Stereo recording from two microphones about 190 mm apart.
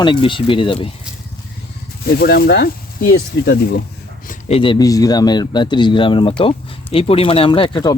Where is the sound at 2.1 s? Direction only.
55° left (ahead or behind).